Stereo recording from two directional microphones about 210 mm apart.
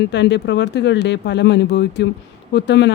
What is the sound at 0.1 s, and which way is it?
Speech, 55° left (ahead or behind).